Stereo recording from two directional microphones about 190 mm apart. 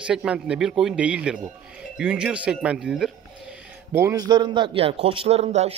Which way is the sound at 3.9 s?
15° right (ahead or behind).